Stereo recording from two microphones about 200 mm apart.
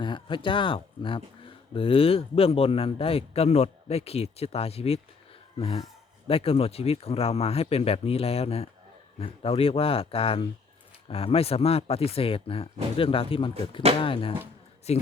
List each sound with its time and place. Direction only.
0.0 s a man's voice: 25° left (ahead or behind)